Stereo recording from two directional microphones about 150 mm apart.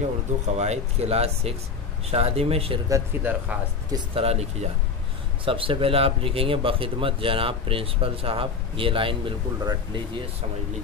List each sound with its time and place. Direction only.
0.6 s speech: 45° right (ahead or behind)
2.9 s speech: 15° right (ahead or behind)
3.9 s speech: 40° right (ahead or behind)